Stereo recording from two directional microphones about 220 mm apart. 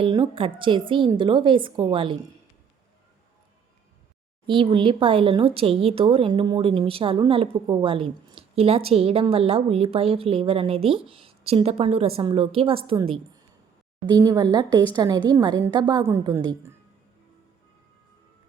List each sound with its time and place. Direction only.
0.0 s speech: 20° right (ahead or behind)
4.4 s speech: 25° right (ahead or behind)